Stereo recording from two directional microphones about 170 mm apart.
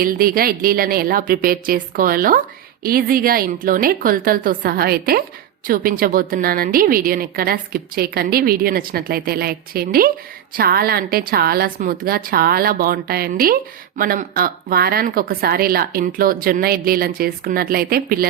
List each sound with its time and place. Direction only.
0.0 s a woman's voice: 60° right (ahead or behind)